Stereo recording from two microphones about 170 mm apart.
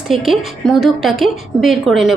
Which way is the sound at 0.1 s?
Centre (ahead or behind).